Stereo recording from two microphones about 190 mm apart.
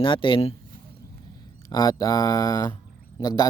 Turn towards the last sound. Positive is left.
turn(degrees=20)  # may be behind; listen again after turning